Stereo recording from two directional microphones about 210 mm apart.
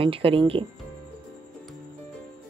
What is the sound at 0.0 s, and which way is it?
Speech, 25° right (ahead or behind).